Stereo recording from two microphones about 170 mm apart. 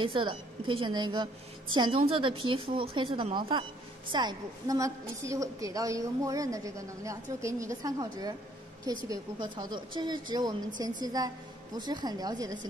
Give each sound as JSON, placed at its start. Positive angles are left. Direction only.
{"t": 0.0, "sound": "a woman's voice", "side_deg": -30}